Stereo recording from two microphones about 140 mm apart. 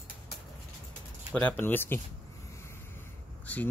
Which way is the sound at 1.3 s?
10° left (ahead or behind).